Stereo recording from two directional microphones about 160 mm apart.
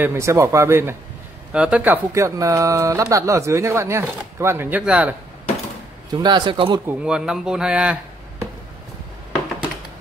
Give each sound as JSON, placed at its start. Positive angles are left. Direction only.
{"t": 0.0, "sound": "speech", "side_deg": -15}
{"t": 2.1, "sound": "speech", "side_deg": -20}
{"t": 6.1, "sound": "speech", "side_deg": -25}
{"t": 6.9, "sound": "speech", "side_deg": -5}